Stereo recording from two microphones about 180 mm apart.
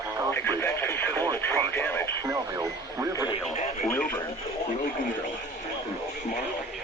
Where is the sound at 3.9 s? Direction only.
5° left (ahead or behind).